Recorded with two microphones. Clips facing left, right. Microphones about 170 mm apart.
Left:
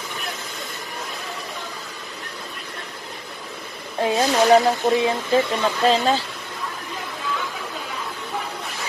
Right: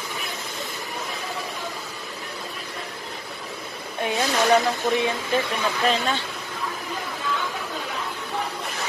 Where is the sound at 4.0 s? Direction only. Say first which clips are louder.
Left 5 dB; 30° left (ahead or behind).